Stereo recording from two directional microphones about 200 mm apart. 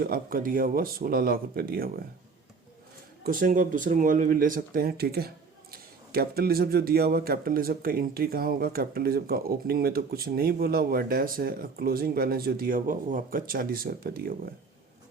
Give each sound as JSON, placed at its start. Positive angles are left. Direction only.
{"t": 0.0, "sound": "speech", "side_deg": -45}
{"t": 3.2, "sound": "speech", "side_deg": -45}